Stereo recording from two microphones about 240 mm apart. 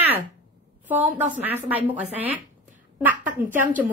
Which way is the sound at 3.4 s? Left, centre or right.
Centre.